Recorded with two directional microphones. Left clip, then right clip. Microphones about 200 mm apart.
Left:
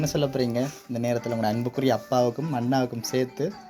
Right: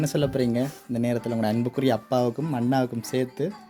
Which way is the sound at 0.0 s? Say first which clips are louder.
Right 1 dB; 40° right (ahead or behind).